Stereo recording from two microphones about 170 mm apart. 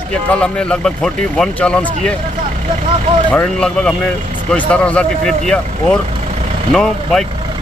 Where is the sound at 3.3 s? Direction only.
5° left (ahead or behind).